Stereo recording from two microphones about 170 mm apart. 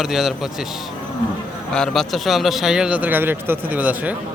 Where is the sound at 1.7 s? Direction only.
5° left (ahead or behind).